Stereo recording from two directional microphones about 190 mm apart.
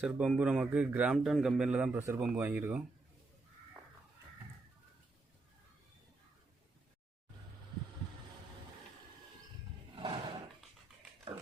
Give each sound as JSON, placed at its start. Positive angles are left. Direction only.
{"t": 0.0, "sound": "speech", "side_deg": -5}
{"t": 9.9, "sound": "roar", "side_deg": -25}